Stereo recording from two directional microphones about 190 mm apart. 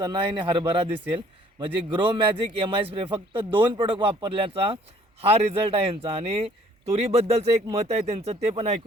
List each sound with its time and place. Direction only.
0.0 s a man's voice: 25° right (ahead or behind)